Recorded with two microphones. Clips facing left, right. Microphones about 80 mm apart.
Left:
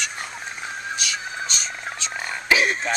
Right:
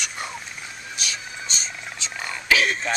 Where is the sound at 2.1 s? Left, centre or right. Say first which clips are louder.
Left 1 dB; left.